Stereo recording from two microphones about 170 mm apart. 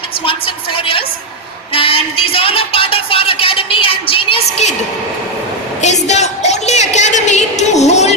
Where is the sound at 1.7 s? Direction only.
35° left (ahead or behind).